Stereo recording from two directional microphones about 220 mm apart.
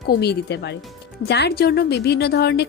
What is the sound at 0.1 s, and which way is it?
A woman's voice, 50° left (ahead or behind).